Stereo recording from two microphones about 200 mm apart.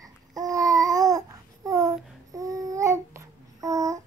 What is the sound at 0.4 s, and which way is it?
Babbling, 15° right (ahead or behind).